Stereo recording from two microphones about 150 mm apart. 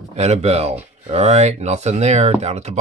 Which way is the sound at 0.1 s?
45° right (ahead or behind).